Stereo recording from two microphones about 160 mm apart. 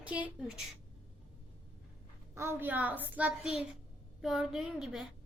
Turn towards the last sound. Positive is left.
turn(degrees=0)  # may be behind; listen again after turning